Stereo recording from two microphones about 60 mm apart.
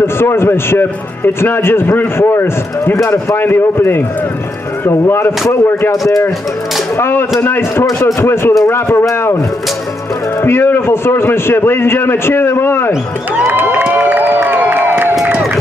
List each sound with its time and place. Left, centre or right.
0.0 s a man's voice: left
5.9 s speech: left
7.0 s a man's voice: left
10.4 s a man's voice: left
13.5 s speech: right